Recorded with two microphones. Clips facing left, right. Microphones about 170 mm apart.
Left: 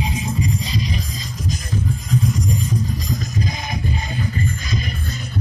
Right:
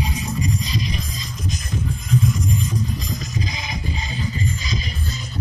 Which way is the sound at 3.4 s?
50° left (ahead or behind).